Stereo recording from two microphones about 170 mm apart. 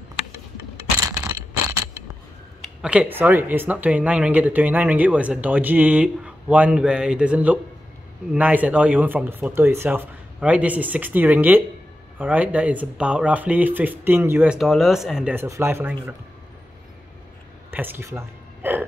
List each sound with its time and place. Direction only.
1.1 s a sound: 15° right (ahead or behind)
2.6 s speech: 5° right (ahead or behind)
17.6 s speech: 10° right (ahead or behind)